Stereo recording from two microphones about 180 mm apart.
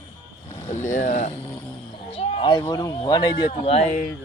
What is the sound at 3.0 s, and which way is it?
Speech, 25° left (ahead or behind).